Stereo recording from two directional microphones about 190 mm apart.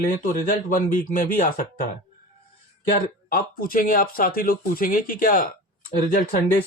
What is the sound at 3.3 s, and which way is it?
Speech, 45° left (ahead or behind).